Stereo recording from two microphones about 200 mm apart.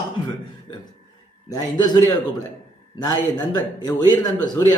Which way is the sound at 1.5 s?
20° left (ahead or behind).